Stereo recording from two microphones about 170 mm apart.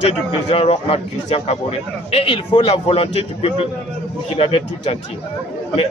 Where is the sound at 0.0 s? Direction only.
35° left (ahead or behind).